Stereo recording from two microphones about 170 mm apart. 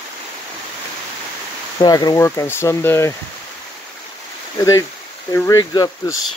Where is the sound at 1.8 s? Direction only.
20° left (ahead or behind).